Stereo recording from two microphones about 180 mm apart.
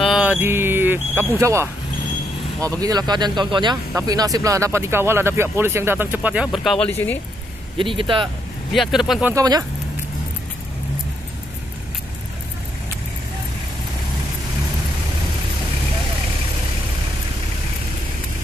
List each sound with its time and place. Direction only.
0.0 s music: 5° right (ahead or behind)
1.4 s speech: 15° right (ahead or behind); by 6.9 s centre (ahead or behind)
7.7 s a man's voice: 30° right (ahead or behind)
8.7 s speech: centre (ahead or behind)
9.3 s a man's voice: 20° right (ahead or behind)